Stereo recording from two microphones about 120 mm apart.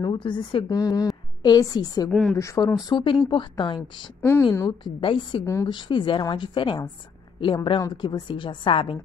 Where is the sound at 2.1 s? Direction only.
5° left (ahead or behind).